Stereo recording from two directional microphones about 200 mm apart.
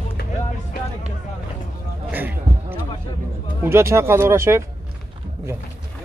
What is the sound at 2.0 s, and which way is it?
Speech, 10° right (ahead or behind).